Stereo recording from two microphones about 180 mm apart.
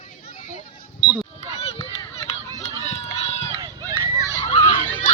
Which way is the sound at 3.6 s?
20° right (ahead or behind).